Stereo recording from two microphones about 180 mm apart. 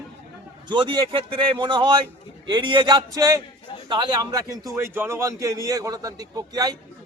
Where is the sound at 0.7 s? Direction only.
25° right (ahead or behind).